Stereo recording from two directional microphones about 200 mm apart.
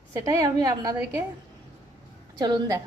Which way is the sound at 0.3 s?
15° right (ahead or behind).